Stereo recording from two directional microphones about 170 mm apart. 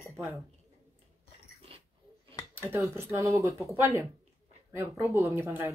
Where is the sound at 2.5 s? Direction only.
15° right (ahead or behind).